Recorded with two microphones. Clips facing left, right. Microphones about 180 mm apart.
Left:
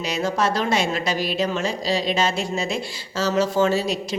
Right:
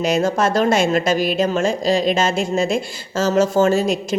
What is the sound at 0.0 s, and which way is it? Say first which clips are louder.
A woman's voice: right 5 dB; 50° right (ahead or behind).